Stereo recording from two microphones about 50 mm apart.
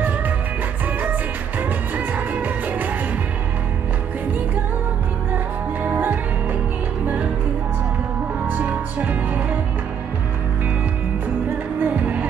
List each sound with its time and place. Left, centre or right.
2.0 s music: right
8.5 s music: right
11.8 s music: right